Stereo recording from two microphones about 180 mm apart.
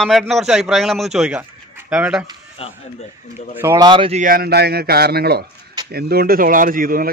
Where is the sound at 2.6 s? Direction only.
35° left (ahead or behind).